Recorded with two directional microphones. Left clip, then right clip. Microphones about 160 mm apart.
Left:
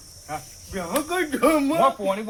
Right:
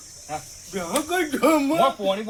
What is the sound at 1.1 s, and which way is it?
Speech, 15° left (ahead or behind).